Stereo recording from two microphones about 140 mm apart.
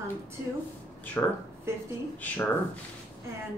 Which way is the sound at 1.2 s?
15° left (ahead or behind).